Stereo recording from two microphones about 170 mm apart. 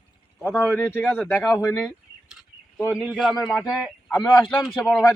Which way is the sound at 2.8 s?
10° right (ahead or behind).